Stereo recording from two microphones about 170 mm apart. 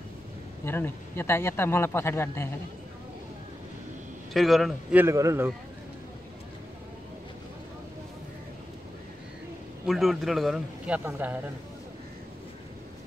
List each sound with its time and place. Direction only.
0.7 s speech: 15° left (ahead or behind)
4.3 s speech: centre (ahead or behind)
5.0 s a man's voice: 15° right (ahead or behind)
9.8 s a man's voice: centre (ahead or behind)